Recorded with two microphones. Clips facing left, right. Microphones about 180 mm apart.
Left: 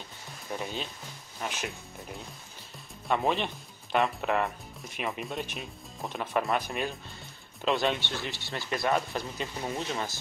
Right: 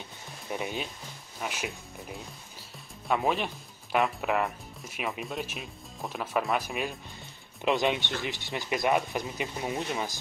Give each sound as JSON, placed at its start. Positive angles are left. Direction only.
{"t": 0.5, "sound": "speech", "side_deg": -15}
{"t": 7.6, "sound": "speech", "side_deg": -15}